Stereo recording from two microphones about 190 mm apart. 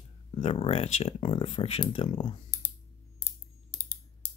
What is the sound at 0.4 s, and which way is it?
Speech, 30° left (ahead or behind).